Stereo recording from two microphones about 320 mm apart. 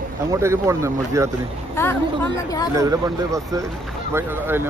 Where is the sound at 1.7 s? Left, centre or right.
Centre.